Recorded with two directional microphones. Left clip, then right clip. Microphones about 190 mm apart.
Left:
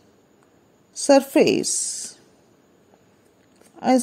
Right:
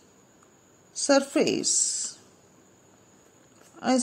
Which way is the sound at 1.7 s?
25° left (ahead or behind).